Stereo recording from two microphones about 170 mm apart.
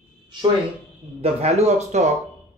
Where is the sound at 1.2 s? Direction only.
40° right (ahead or behind).